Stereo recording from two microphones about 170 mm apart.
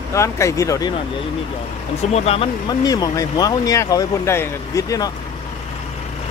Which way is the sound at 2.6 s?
20° left (ahead or behind).